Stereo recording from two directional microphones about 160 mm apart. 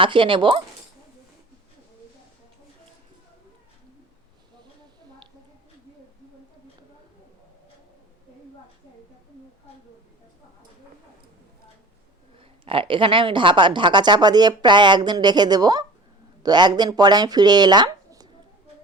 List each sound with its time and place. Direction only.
0.0 s speech: 30° right (ahead or behind)
12.6 s speech: 35° right (ahead or behind)